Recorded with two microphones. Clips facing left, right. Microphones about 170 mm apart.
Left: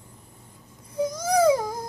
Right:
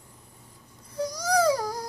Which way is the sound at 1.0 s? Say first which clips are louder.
Left 3 dB; 25° left (ahead or behind).